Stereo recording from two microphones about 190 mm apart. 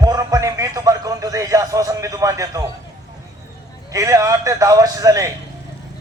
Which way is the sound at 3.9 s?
15° right (ahead or behind).